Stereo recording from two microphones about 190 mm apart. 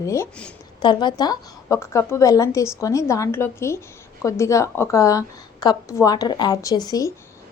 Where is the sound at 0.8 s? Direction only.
25° left (ahead or behind).